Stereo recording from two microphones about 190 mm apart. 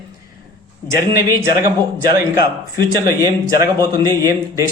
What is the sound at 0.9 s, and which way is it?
A man's voice, 20° right (ahead or behind).